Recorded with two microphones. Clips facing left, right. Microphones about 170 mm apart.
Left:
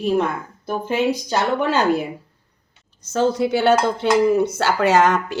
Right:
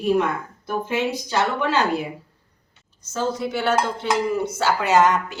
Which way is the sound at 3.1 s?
70° left (ahead or behind).